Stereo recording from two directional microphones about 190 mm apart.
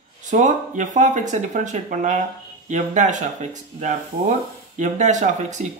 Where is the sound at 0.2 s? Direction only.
40° right (ahead or behind).